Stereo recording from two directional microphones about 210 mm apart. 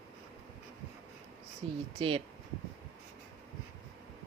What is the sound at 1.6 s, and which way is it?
Speech, 25° right (ahead or behind).